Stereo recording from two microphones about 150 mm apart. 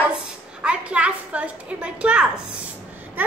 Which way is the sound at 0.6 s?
10° right (ahead or behind).